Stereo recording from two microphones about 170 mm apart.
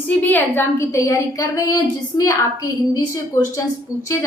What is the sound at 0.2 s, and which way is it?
A woman's voice, 10° left (ahead or behind).